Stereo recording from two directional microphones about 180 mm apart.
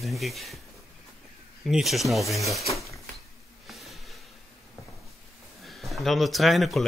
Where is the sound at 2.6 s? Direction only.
15° left (ahead or behind).